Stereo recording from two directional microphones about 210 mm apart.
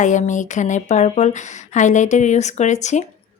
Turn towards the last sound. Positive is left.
turn(degrees=35)  # may be behind; listen again after turning